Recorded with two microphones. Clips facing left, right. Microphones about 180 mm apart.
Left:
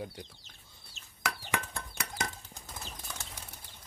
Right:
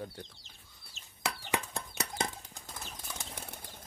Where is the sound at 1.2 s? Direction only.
25° right (ahead or behind).